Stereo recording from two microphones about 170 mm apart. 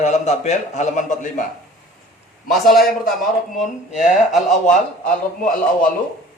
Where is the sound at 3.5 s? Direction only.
45° left (ahead or behind).